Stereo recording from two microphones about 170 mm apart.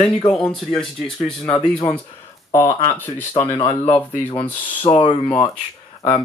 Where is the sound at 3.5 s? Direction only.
35° left (ahead or behind).